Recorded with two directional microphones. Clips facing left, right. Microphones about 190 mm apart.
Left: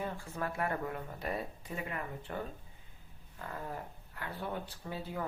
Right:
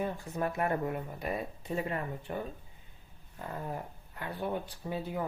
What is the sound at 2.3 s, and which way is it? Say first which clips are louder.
Speech: right 3 dB; 20° right (ahead or behind).